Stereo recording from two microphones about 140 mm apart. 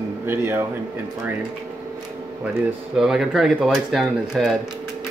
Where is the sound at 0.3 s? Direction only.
20° right (ahead or behind).